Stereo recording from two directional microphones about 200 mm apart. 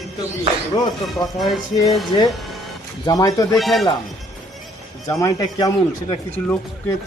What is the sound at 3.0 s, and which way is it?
Speech, 15° left (ahead or behind).